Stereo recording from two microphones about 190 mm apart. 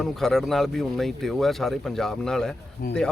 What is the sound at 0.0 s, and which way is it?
Speech, centre (ahead or behind).